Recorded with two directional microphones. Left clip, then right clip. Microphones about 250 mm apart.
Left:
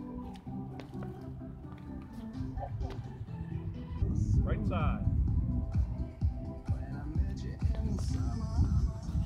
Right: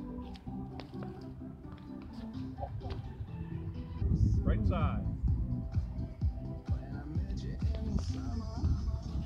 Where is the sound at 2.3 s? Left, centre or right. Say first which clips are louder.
Left 1 dB; left.